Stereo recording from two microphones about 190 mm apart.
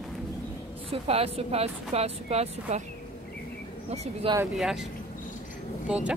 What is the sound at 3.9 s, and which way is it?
Speech, 35° right (ahead or behind).